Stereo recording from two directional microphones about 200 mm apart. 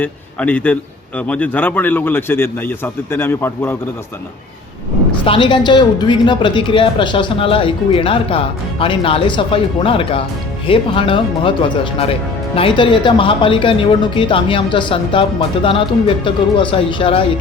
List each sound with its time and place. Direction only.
0.0 s a man's voice: 5° left (ahead or behind)
5.2 s speech: 25° left (ahead or behind)